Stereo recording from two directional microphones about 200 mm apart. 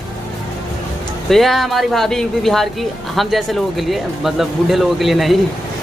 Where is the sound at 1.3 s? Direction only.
Centre (ahead or behind).